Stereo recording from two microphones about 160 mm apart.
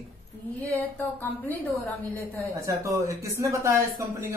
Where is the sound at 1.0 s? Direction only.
10° left (ahead or behind).